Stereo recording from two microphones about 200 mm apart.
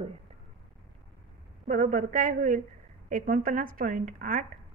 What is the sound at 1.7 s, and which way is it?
A woman's voice, 40° right (ahead or behind).